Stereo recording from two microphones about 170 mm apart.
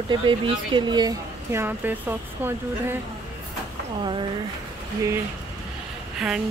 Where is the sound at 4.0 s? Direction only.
25° right (ahead or behind).